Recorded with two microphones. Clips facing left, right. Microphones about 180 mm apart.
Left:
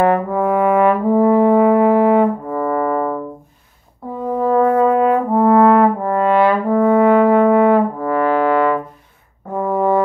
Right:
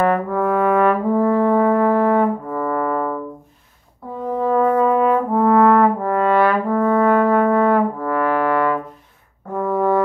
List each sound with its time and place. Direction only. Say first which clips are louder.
0.0 s brass instrument: left 3 dB; 20° left (ahead or behind)
4.4 s brass instrument: left 3 dB; 40° left (ahead or behind)
5.3 s brass instrument: left 3 dB; 25° left (ahead or behind)